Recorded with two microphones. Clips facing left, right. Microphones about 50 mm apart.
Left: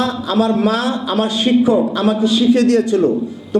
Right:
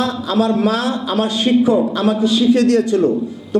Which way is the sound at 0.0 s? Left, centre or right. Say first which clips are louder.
Left 1 dB; centre.